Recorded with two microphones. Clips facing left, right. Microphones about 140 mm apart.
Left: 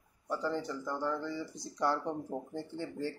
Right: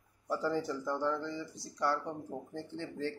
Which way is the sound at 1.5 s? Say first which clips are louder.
Left 1 dB; 20° left (ahead or behind).